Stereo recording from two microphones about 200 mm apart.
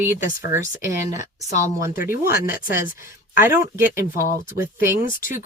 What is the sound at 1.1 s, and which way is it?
Speech, 40° left (ahead or behind).